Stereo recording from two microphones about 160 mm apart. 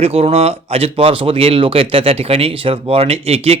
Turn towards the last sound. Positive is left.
turn(degrees=-40)  # may be behind; listen again after turning